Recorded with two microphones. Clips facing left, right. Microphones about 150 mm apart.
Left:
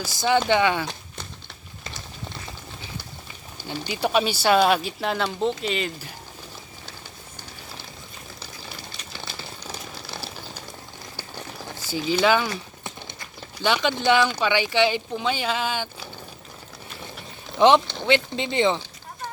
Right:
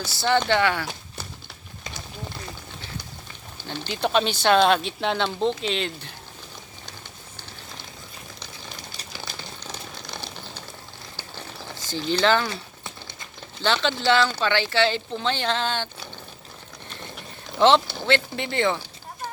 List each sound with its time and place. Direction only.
0.0 s speech: 10° left (ahead or behind)
3.7 s speech: 10° left (ahead or behind)
9.1 s a sound: 5° left (ahead or behind)
11.9 s speech: 5° left (ahead or behind)
16.9 s ratchet: 5° left (ahead or behind)
17.6 s speech: 15° left (ahead or behind)